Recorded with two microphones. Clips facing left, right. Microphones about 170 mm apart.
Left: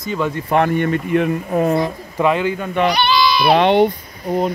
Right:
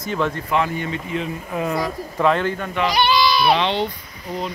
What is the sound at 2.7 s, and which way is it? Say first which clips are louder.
Speech: left 2 dB; 60° left (ahead or behind).